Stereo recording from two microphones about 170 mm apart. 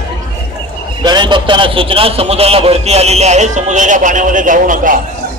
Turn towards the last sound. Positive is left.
turn(degrees=-50)  # may be behind; listen again after turning